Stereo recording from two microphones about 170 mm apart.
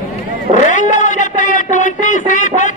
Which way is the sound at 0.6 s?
45° left (ahead or behind).